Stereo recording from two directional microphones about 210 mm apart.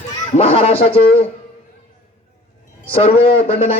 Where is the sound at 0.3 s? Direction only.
30° left (ahead or behind).